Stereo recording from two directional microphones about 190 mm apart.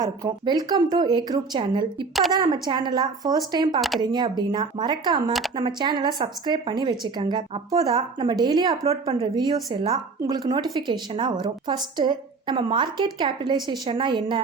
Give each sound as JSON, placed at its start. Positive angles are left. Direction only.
{"t": 0.0, "sound": "a woman's voice", "side_deg": -20}
{"t": 3.8, "sound": "speech", "side_deg": 0}
{"t": 4.0, "sound": "a woman's voice", "side_deg": -20}